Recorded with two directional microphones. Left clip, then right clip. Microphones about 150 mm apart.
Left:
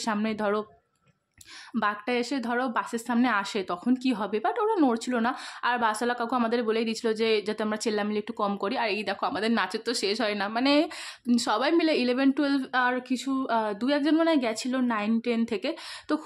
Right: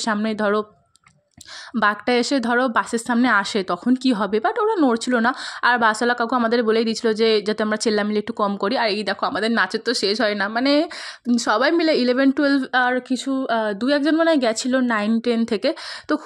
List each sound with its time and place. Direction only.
0.0 s a woman's voice: 30° right (ahead or behind)
1.7 s speech: 40° right (ahead or behind)